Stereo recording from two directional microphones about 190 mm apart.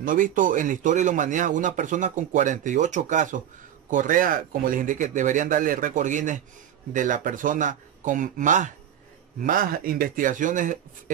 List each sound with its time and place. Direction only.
0.0 s speech: 45° right (ahead or behind)